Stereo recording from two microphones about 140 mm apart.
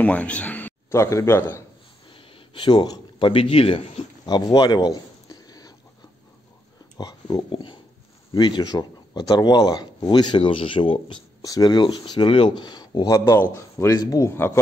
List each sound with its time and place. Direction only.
0.0 s speech: 10° left (ahead or behind)
2.1 s a man's voice: 40° left (ahead or behind)
4.3 s a sound: 30° left (ahead or behind)
7.0 s speech: 30° left (ahead or behind)